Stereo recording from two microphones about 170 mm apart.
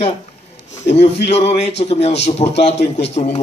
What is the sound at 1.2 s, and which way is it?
Speech, 40° left (ahead or behind).